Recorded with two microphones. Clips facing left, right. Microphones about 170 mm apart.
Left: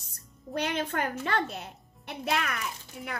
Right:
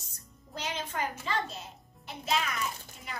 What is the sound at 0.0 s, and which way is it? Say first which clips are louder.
A child's voice: left 7 dB; 60° left (ahead or behind).